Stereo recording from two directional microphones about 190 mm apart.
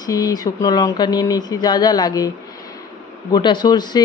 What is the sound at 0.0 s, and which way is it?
Speech, 20° left (ahead or behind).